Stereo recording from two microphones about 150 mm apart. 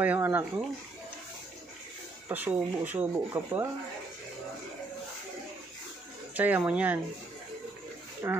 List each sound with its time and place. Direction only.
0.0 s speech: 10° right (ahead or behind)
2.2 s speech: 10° right (ahead or behind)
6.3 s speech: 10° right (ahead or behind)
8.2 s speech: 15° right (ahead or behind)